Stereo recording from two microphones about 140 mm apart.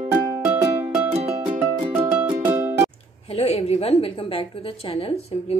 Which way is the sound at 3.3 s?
45° left (ahead or behind).